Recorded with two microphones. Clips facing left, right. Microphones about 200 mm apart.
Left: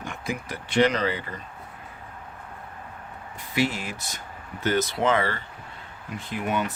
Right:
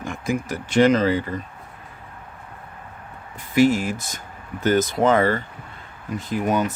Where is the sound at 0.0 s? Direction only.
45° right (ahead or behind).